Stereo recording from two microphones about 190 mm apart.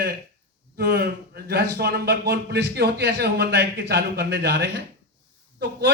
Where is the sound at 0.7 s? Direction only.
60° right (ahead or behind).